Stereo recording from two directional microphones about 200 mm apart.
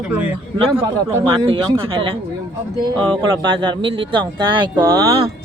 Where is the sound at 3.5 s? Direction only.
25° right (ahead or behind).